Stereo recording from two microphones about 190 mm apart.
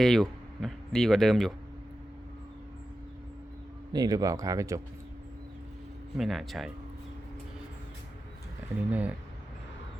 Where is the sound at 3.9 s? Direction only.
20° right (ahead or behind).